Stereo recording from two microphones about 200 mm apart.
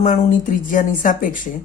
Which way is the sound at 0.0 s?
40° left (ahead or behind).